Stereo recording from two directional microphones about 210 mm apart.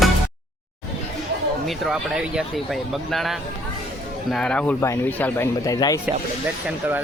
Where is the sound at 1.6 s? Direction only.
Centre (ahead or behind); by 6.0 s 15° left (ahead or behind).